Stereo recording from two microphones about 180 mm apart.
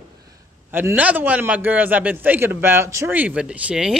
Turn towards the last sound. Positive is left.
turn(degrees=-5)  # may be behind; listen again after turning